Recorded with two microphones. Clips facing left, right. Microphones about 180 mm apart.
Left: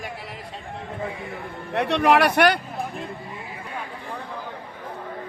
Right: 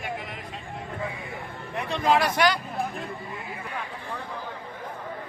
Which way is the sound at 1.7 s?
75° left (ahead or behind).